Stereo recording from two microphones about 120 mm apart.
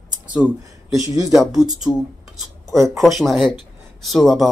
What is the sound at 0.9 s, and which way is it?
Speech, 30° right (ahead or behind).